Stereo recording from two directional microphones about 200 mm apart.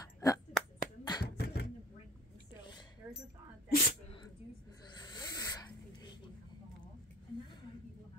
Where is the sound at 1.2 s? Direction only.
55° left (ahead or behind).